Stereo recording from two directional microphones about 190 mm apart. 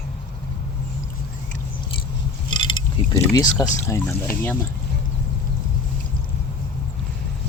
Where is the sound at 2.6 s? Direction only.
25° left (ahead or behind).